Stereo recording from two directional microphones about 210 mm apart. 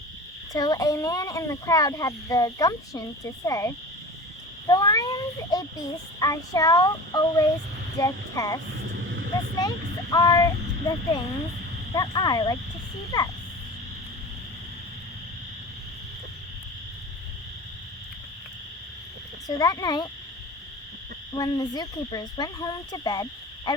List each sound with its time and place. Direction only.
0.5 s speech: 15° left (ahead or behind)
8.9 s a sound: 60° right (ahead or behind)
9.6 s speech: 20° left (ahead or behind)
19.5 s speech: 15° left (ahead or behind)
21.3 s speech: 20° left (ahead or behind)